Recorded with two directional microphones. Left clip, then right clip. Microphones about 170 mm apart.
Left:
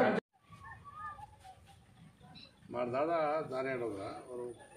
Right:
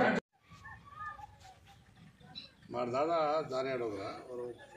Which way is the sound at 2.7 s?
10° right (ahead or behind).